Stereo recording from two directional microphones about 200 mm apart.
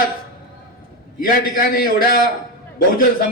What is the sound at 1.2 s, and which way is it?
Speech, 45° left (ahead or behind).